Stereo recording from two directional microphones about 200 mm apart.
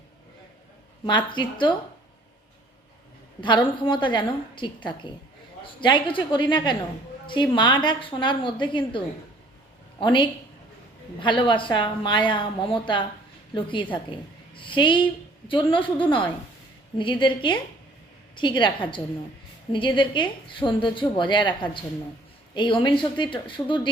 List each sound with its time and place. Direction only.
1.0 s a woman's voice: 25° left (ahead or behind)
3.4 s a woman's voice: 25° left (ahead or behind)
5.8 s a woman's voice: 25° left (ahead or behind)